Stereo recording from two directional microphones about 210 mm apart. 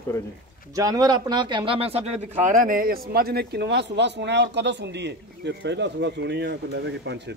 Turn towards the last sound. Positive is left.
turn(degrees=-55)  # may be behind; listen again after turning